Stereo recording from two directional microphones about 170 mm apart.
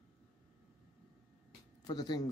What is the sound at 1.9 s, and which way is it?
Speech, 25° left (ahead or behind).